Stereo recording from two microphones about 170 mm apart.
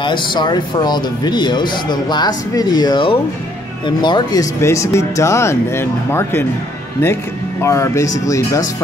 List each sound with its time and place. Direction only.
0.0 s speech: 25° left (ahead or behind)
7.6 s speech: 15° left (ahead or behind)